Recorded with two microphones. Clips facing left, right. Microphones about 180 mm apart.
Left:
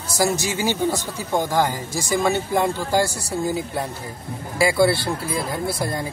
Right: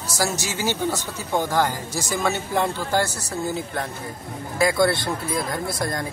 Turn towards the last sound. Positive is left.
turn(degrees=5)  # may be behind; listen again after turning